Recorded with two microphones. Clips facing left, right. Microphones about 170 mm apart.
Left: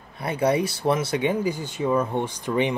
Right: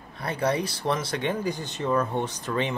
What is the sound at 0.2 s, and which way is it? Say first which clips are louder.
Speech: left 4 dB; 10° left (ahead or behind).